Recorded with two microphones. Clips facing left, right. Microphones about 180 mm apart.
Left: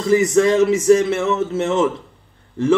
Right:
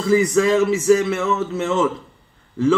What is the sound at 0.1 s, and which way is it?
Speech, 25° left (ahead or behind).